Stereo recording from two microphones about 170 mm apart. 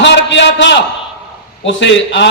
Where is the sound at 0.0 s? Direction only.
90° left.